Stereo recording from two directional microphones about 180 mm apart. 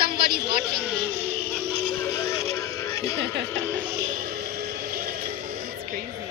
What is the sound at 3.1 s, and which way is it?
Speech, 70° right (ahead or behind).